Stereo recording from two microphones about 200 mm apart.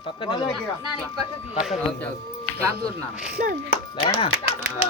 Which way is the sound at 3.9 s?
30° left (ahead or behind).